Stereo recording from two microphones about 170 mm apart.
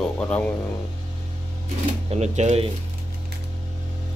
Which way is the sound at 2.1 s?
40° right (ahead or behind).